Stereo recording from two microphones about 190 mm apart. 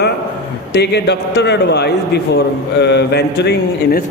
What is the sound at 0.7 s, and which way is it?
A man's voice, 60° left (ahead or behind).